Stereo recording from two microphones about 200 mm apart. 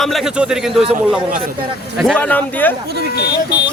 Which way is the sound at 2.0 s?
5° left (ahead or behind).